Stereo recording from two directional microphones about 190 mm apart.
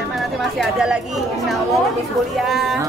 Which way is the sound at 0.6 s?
5° right (ahead or behind).